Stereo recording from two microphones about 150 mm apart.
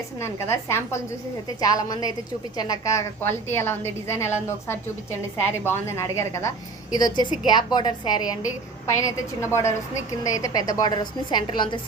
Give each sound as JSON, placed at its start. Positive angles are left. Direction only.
{"t": 0.2, "sound": "a woman's voice", "side_deg": 15}